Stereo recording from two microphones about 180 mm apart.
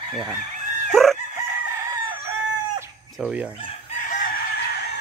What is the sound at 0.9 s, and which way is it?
Crowing, centre (ahead or behind).